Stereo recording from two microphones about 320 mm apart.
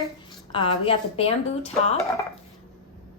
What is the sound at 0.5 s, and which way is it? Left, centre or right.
Speech, centre.